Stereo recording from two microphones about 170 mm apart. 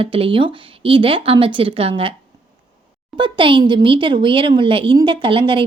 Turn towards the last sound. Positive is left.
turn(degrees=-30)  # may be behind; listen again after turning